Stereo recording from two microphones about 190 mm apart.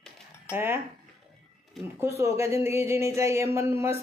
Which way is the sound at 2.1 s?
15° right (ahead or behind).